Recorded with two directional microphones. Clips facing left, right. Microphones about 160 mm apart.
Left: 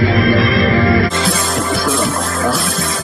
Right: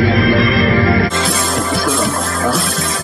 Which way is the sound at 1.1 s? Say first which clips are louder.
Even; centre (ahead or behind).